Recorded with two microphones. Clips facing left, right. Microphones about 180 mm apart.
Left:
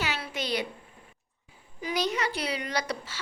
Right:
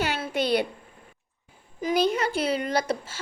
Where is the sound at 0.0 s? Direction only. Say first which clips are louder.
Right 6 dB; 55° right (ahead or behind).